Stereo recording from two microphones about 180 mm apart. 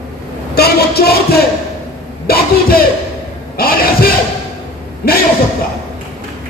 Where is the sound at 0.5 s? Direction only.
60° left (ahead or behind).